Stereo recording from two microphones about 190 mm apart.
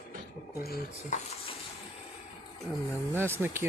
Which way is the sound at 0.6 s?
55° left (ahead or behind).